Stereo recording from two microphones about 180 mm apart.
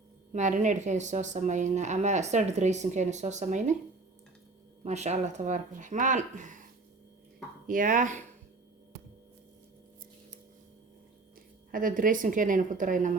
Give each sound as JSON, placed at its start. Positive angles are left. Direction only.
{"t": 0.3, "sound": "speech", "side_deg": -45}
{"t": 4.8, "sound": "speech", "side_deg": -40}
{"t": 7.7, "sound": "a woman's voice", "side_deg": -45}
{"t": 11.7, "sound": "a woman's voice", "side_deg": -50}